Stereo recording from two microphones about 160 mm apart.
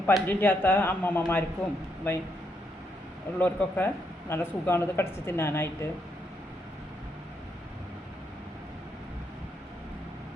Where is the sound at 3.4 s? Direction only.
10° left (ahead or behind).